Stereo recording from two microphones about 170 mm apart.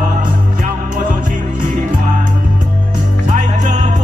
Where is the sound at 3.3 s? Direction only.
45° right (ahead or behind).